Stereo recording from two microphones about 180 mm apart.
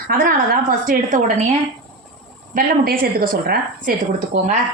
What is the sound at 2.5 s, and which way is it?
A woman's voice, 50° right (ahead or behind).